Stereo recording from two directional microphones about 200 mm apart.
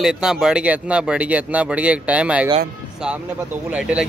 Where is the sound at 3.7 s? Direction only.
5° right (ahead or behind).